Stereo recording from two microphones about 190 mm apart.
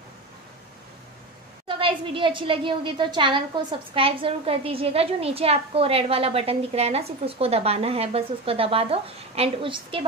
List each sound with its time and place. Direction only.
1.7 s a woman's voice: 25° right (ahead or behind)